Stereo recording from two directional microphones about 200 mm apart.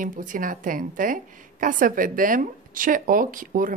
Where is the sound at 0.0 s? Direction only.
40° right (ahead or behind).